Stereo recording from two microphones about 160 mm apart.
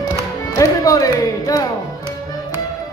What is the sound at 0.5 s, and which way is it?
Music, 20° left (ahead or behind).